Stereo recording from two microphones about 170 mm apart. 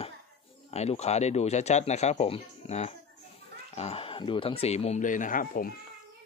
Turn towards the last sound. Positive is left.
turn(degrees=60)  # may be behind; listen again after turning